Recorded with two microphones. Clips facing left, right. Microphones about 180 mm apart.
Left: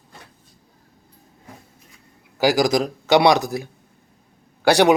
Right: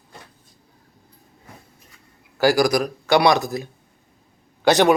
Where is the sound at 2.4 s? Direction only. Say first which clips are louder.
Even; 20° left (ahead or behind).